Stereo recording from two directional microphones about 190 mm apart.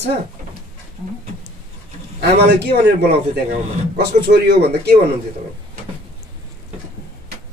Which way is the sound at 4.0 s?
60° right (ahead or behind).